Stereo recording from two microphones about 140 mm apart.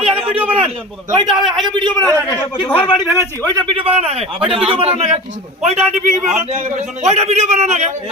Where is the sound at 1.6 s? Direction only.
35° right (ahead or behind).